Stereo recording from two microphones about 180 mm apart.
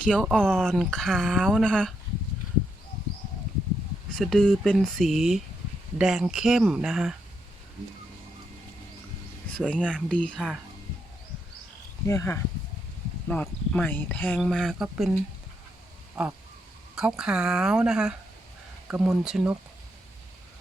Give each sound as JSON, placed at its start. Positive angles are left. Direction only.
{"t": 0.0, "sound": "speech", "side_deg": 0}
{"t": 4.1, "sound": "speech", "side_deg": 0}
{"t": 9.8, "sound": "speech", "side_deg": 5}
{"t": 12.0, "sound": "speech", "side_deg": 15}
{"t": 16.2, "sound": "speech", "side_deg": -5}